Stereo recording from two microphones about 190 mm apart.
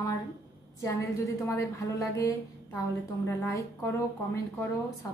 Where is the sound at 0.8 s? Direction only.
15° left (ahead or behind).